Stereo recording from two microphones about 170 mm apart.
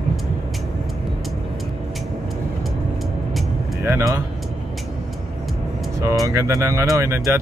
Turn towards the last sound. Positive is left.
turn(degrees=-15)  # may be behind; listen again after turning